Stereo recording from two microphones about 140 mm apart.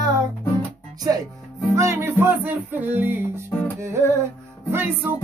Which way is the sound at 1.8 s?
20° right (ahead or behind).